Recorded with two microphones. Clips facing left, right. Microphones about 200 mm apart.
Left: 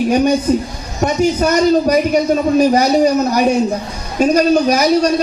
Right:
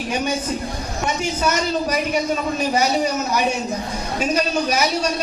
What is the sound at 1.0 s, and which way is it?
A man's voice, 40° left (ahead or behind).